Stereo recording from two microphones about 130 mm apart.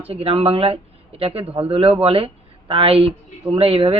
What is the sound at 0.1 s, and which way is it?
A man's voice, 50° right (ahead or behind).